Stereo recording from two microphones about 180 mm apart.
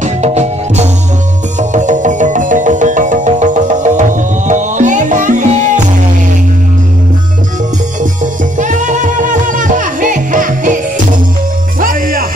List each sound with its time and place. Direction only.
0.0 s music: 40° right (ahead or behind)
8.0 s music: 45° right (ahead or behind)